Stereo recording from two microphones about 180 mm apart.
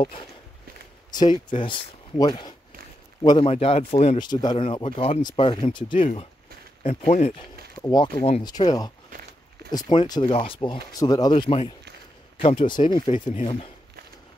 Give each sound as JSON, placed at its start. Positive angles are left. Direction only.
{"t": 1.1, "sound": "speech", "side_deg": 25}
{"t": 4.2, "sound": "speech", "side_deg": 25}
{"t": 5.9, "sound": "speech", "side_deg": 40}
{"t": 7.8, "sound": "speech", "side_deg": 20}